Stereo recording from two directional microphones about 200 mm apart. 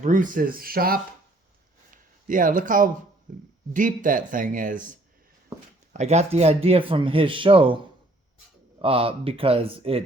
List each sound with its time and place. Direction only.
0.0 s speech: 40° right (ahead or behind)
1.9 s a sound: 40° right (ahead or behind)
3.3 s speech: 40° right (ahead or behind); by 7.8 s 25° right (ahead or behind)
8.8 s speech: 25° right (ahead or behind)